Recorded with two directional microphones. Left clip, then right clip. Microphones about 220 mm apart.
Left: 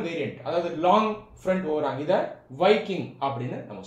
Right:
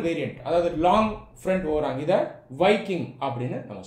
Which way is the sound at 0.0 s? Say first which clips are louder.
Right 2 dB; 35° right (ahead or behind).